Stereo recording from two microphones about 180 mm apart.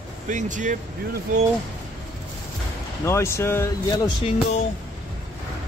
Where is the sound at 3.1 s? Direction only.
15° left (ahead or behind).